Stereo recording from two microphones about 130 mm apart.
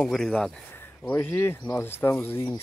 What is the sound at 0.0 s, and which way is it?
Speech, 5° left (ahead or behind).